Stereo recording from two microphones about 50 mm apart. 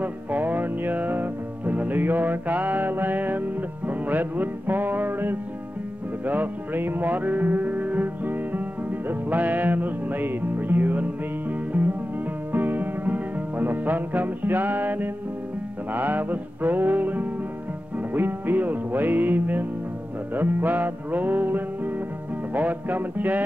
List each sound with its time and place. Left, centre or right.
0.0 s music: right